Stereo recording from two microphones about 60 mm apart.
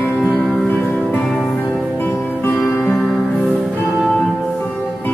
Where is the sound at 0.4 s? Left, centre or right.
Left.